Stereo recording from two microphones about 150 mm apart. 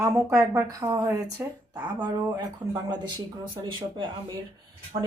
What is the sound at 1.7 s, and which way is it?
Speech, 25° right (ahead or behind).